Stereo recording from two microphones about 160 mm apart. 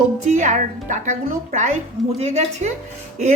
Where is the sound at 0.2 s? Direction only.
50° right (ahead or behind).